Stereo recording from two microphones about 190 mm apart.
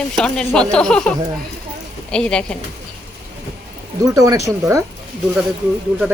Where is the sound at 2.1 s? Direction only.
5° left (ahead or behind).